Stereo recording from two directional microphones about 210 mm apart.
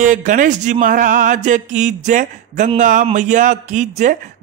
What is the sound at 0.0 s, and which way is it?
A man's voice, 40° right (ahead or behind).